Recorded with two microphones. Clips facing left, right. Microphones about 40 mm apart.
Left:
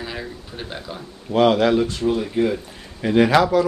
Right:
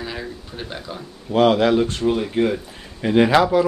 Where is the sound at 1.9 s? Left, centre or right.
Right.